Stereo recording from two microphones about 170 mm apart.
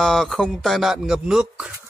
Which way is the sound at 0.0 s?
Centre (ahead or behind).